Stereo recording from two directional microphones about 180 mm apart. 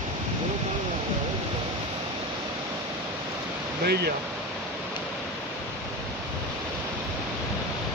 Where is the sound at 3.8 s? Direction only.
65° right (ahead or behind).